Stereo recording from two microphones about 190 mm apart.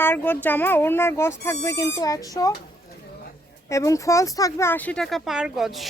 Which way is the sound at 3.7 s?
15° left (ahead or behind).